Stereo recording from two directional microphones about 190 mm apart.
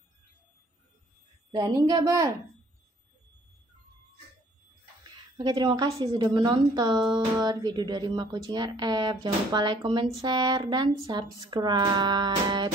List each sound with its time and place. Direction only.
1.5 s speech: 20° right (ahead or behind)
5.4 s speech: 25° right (ahead or behind)